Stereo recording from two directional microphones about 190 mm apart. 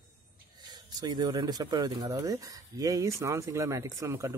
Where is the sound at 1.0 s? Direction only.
20° right (ahead or behind).